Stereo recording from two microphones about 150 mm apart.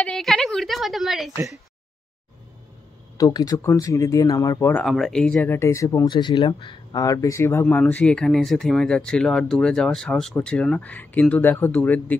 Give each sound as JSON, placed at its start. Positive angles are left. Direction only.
{"t": 0.0, "sound": "speech", "side_deg": 0}
{"t": 3.2, "sound": "speech", "side_deg": 25}
{"t": 4.8, "sound": "speech", "side_deg": 0}
{"t": 7.6, "sound": "speech", "side_deg": 10}